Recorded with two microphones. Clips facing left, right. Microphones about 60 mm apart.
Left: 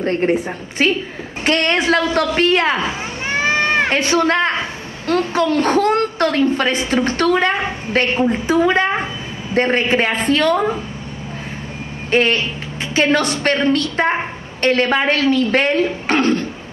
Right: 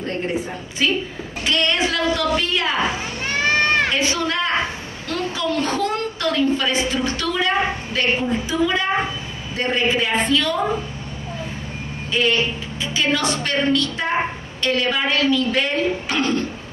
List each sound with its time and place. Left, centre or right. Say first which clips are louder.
0.0 s a woman's voice: left 7 dB; left
3.3 s run: left 2 dB; centre
3.9 s a woman's voice: left 6 dB; left
12.1 s a woman's voice: left 4 dB; left